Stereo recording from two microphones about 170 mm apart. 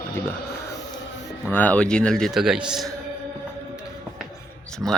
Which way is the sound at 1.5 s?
10° left (ahead or behind).